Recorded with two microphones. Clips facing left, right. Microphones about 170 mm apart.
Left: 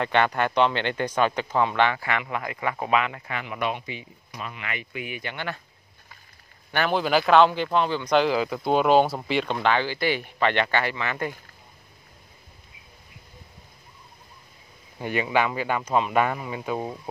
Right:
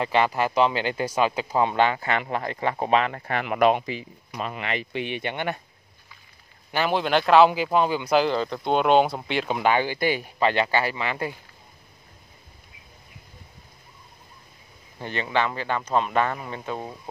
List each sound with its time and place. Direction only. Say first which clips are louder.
0.0 s speech: even; 5° right (ahead or behind)
1.8 s speech: right 1 dB; 30° right (ahead or behind)
3.4 s speech: right 10 dB; 80° right
3.7 s speech: right 7 dB; 35° right (ahead or behind)
6.7 s a man's voice: even; centre (ahead or behind)
10.0 s speech: right 1 dB; 40° right (ahead or behind)
11.0 s speech: right 1 dB; 20° right (ahead or behind)
15.0 s speech: left 2 dB; 10° left (ahead or behind)